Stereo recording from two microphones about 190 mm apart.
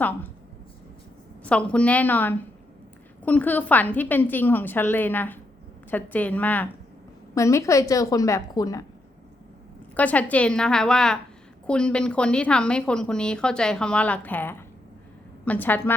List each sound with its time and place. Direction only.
0.0 s a woman's voice: 10° left (ahead or behind)
1.5 s a woman's voice: 5° left (ahead or behind)
9.9 s a woman's voice: 10° left (ahead or behind)